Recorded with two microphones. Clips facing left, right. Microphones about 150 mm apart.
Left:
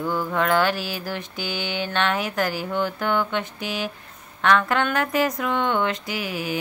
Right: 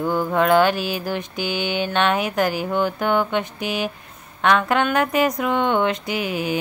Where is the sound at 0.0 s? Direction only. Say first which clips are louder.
Right 4 dB; 20° right (ahead or behind).